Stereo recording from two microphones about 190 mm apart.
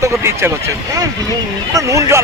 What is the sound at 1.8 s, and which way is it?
Speech, 15° right (ahead or behind).